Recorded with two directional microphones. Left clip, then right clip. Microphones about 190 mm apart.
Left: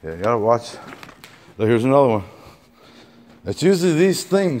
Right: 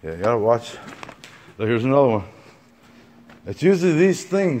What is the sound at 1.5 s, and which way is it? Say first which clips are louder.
Speech: left 3 dB; 35° left (ahead or behind).